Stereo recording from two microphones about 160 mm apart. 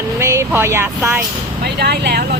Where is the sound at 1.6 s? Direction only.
90° right.